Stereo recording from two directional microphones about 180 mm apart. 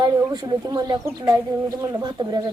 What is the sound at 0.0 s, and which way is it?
Speech, 25° right (ahead or behind).